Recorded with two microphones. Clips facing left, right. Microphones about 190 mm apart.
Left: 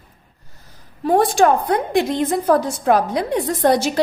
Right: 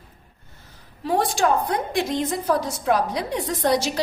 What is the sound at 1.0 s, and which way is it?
A woman's voice, 50° left (ahead or behind).